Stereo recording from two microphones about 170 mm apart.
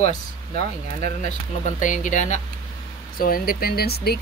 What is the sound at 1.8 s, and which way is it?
Speech, 45° left (ahead or behind).